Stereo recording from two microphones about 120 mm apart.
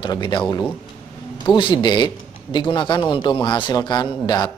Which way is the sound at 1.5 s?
40° left (ahead or behind).